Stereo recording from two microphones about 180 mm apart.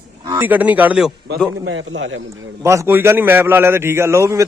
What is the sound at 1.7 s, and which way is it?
Speech, 90° right.